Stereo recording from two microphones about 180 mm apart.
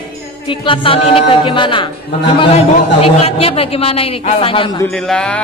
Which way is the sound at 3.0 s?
35° left (ahead or behind).